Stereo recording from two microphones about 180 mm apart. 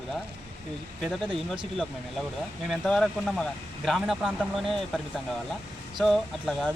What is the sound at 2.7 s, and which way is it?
Speech, centre (ahead or behind).